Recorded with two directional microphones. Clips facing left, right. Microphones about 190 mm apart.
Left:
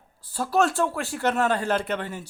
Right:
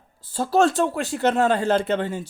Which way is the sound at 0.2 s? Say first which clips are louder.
Right 4 dB; 25° right (ahead or behind).